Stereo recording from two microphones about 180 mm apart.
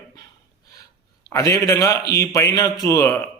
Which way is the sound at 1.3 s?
15° left (ahead or behind).